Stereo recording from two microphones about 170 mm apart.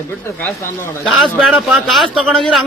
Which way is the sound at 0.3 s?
10° left (ahead or behind).